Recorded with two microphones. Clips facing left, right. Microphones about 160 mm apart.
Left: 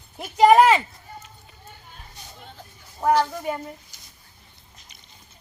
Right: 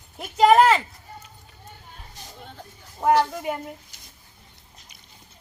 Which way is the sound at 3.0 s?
5° right (ahead or behind).